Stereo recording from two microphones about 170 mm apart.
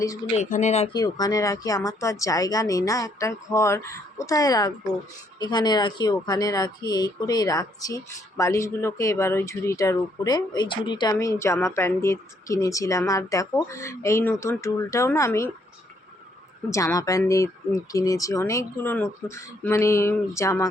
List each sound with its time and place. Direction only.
0.0 s speech: 20° left (ahead or behind)
0.3 s speech: 45° left (ahead or behind)
0.9 s speech: 25° left (ahead or behind)
16.7 s speech: 20° left (ahead or behind)